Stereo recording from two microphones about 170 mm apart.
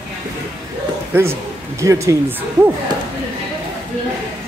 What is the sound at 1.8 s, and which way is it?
Speech, 20° right (ahead or behind).